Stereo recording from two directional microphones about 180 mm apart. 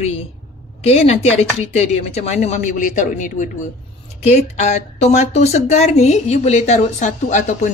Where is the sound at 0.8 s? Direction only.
35° left (ahead or behind).